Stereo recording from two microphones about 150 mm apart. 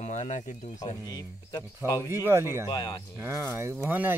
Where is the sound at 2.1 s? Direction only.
20° right (ahead or behind).